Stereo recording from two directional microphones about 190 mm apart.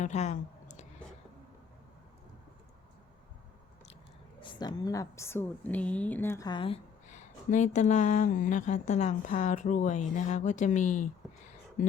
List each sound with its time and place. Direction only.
0.0 s a sound: 35° left (ahead or behind)
4.4 s a woman's voice: 25° left (ahead or behind)
7.1 s speech: 40° left (ahead or behind)